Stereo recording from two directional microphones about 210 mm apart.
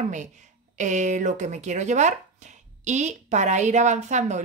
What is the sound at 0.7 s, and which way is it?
Speech, 35° right (ahead or behind).